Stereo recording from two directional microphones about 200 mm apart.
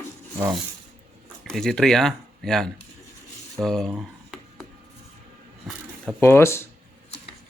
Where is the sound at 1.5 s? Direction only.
Centre (ahead or behind).